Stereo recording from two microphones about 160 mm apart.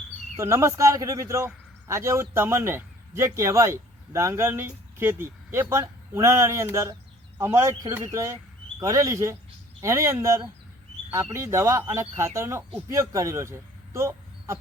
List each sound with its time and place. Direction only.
0.3 s a man's voice: 15° right (ahead or behind)